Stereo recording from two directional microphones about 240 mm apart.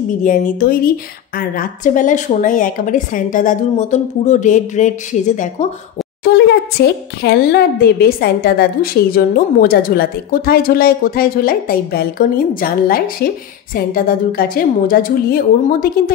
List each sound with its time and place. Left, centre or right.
0.2 s a woman's voice: left
6.8 s a woman's voice: left